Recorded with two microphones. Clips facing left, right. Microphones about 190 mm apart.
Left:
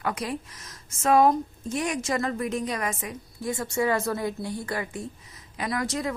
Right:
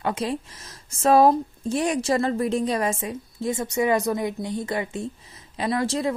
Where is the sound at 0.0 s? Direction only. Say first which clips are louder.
Right 4 dB; 25° right (ahead or behind).